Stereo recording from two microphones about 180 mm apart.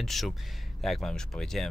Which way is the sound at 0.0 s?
Centre (ahead or behind).